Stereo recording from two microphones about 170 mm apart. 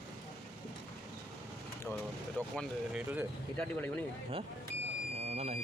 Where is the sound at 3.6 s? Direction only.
5° left (ahead or behind).